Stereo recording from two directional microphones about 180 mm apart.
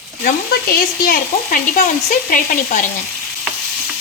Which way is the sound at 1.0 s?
50° left (ahead or behind).